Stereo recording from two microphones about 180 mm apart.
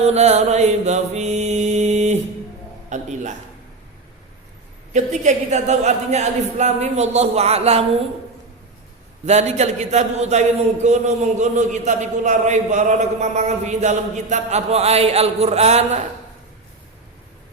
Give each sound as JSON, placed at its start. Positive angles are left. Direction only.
{"t": 0.0, "sound": "mantra", "side_deg": -35}
{"t": 2.9, "sound": "a man's voice", "side_deg": -45}
{"t": 4.9, "sound": "a man's voice", "side_deg": -40}
{"t": 9.2, "sound": "a man's voice", "side_deg": -40}